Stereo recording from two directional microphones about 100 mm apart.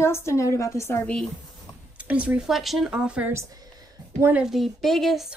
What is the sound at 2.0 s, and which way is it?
A woman's voice, 15° right (ahead or behind).